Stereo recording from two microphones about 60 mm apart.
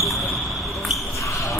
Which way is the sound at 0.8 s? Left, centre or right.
Centre.